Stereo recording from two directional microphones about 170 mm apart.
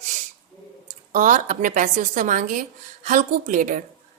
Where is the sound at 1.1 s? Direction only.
50° right (ahead or behind).